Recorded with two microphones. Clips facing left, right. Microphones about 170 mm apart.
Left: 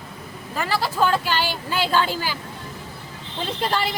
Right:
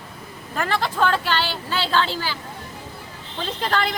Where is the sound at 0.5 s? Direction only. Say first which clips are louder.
Even; 5° left (ahead or behind).